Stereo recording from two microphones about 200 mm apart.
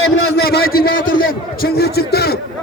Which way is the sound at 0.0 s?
55° left (ahead or behind).